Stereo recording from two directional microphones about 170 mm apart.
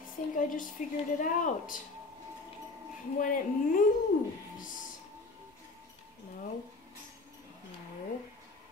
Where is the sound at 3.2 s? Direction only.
50° left (ahead or behind).